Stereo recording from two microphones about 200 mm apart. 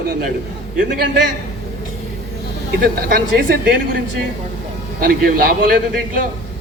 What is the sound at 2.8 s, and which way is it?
Speech, 45° right (ahead or behind).